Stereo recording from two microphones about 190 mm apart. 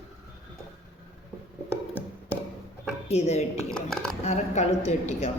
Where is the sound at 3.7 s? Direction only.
5° left (ahead or behind).